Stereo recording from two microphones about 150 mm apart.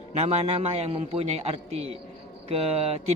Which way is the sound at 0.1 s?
45° right (ahead or behind).